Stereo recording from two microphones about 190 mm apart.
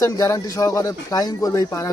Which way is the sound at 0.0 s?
15° left (ahead or behind).